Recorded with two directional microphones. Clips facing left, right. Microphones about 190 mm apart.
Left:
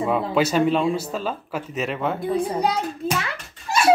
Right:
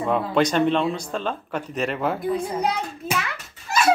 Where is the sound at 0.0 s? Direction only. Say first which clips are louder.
Even; 5° left (ahead or behind).